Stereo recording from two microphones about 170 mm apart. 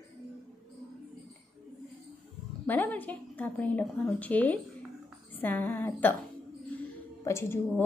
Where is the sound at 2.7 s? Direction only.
10° left (ahead or behind).